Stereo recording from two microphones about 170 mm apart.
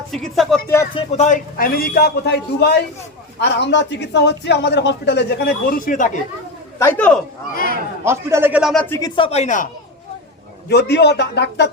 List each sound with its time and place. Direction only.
0.1 s speech: centre (ahead or behind)
0.9 s a man's voice: 40° left (ahead or behind); by 2.7 s 75° left (ahead or behind)
3.4 s speech: 90° left
5.8 s speech: 50° left (ahead or behind)
6.7 s speech: 10° left (ahead or behind)
8.0 s a man's voice: 15° right (ahead or behind)
8.7 s speech: 5° left (ahead or behind)
9.0 s speech: 25° left (ahead or behind); by 9.6 s 45° left (ahead or behind)
10.7 s a man's voice: 75° left (ahead or behind)